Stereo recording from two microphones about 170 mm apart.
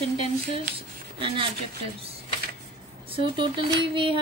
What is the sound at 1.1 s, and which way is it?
Speech, 30° right (ahead or behind).